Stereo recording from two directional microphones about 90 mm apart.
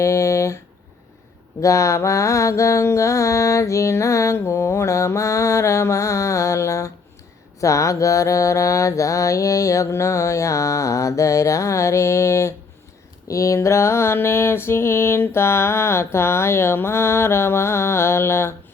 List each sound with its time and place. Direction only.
0.0 s speech: 35° left (ahead or behind)
1.6 s mantra: 35° left (ahead or behind)
13.2 s a sound: 35° left (ahead or behind)